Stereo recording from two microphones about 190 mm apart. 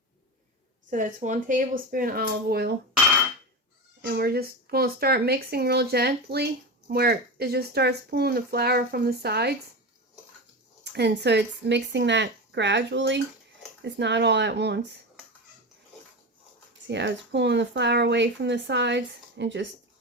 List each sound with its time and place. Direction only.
0.9 s speech: 40° right (ahead or behind)
4.0 s speech: 50° right (ahead or behind)
10.9 s speech: 65° right (ahead or behind)
16.9 s speech: 65° right (ahead or behind)